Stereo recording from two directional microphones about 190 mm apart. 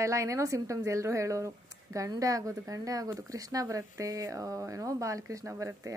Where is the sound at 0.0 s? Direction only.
15° right (ahead or behind).